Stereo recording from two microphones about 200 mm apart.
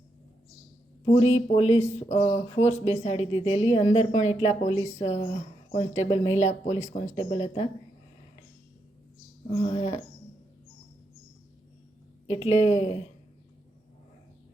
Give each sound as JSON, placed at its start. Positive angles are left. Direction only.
{"t": 1.1, "sound": "speech", "side_deg": 30}
{"t": 9.5, "sound": "speech", "side_deg": 30}
{"t": 12.3, "sound": "speech", "side_deg": 35}